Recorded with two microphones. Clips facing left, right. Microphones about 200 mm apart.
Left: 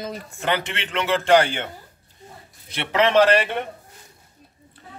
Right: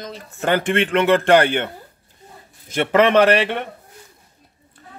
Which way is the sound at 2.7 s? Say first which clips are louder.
Right 4 dB; 50° right (ahead or behind).